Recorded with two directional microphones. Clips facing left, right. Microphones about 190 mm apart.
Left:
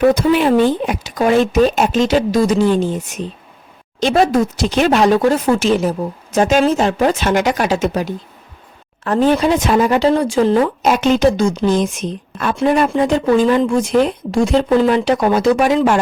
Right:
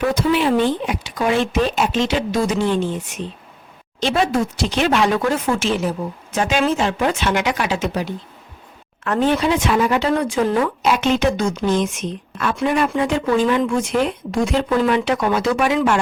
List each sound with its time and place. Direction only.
0.1 s a woman's voice: 45° left (ahead or behind)
10.8 s a woman's voice: 40° left (ahead or behind)